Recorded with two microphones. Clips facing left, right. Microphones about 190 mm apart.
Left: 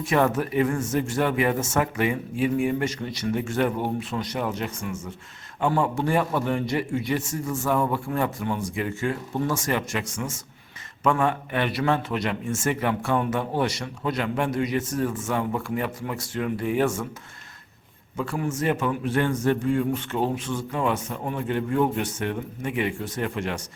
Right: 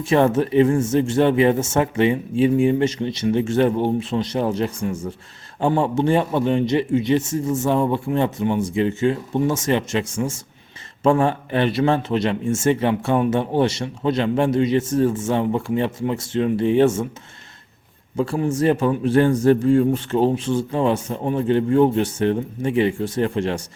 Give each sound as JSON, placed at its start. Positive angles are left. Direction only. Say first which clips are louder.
{"t": 0.0, "sound": "a man's voice", "louder": "right 5 dB", "side_deg": -30}
{"t": 18.2, "sound": "a man's voice", "louder": "right 7 dB", "side_deg": -30}